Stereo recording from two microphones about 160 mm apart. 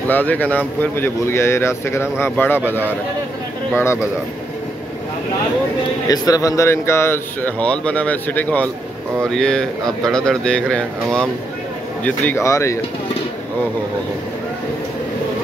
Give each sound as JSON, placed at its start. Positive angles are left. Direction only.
{"t": 0.1, "sound": "speech", "side_deg": 10}
{"t": 3.7, "sound": "speech", "side_deg": 15}
{"t": 6.0, "sound": "speech", "side_deg": 25}